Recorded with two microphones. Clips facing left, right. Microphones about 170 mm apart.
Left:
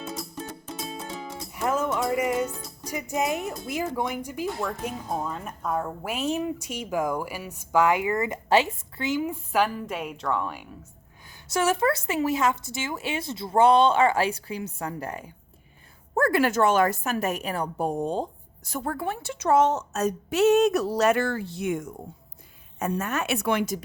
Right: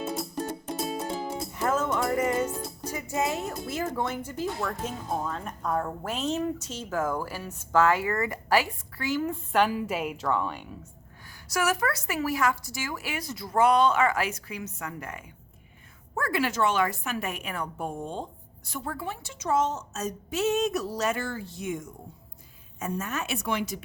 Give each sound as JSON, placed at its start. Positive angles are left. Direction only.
{"t": 0.3, "sound": "music", "side_deg": -40}
{"t": 1.5, "sound": "music", "side_deg": 10}
{"t": 3.7, "sound": "a woman's voice", "side_deg": 15}
{"t": 9.2, "sound": "a woman's voice", "side_deg": 5}
{"t": 11.4, "sound": "speech", "side_deg": 25}
{"t": 16.1, "sound": "a woman's voice", "side_deg": 45}